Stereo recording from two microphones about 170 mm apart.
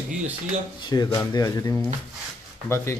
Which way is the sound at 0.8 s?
25° left (ahead or behind).